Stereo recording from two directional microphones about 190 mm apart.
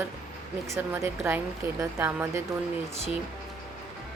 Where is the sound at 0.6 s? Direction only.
15° right (ahead or behind).